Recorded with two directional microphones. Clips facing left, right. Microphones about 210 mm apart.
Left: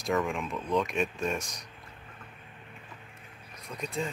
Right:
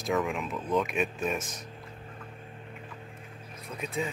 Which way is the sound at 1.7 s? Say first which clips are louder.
Right 6 dB; 35° right (ahead or behind).